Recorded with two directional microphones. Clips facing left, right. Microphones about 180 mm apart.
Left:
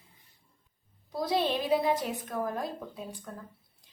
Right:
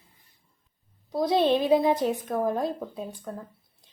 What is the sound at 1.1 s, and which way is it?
Speech, 25° right (ahead or behind).